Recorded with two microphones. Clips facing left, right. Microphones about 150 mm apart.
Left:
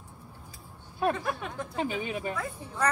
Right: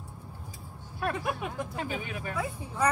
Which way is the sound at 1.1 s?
10° right (ahead or behind).